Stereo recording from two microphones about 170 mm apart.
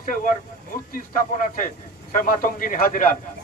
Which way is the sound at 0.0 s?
50° left (ahead or behind).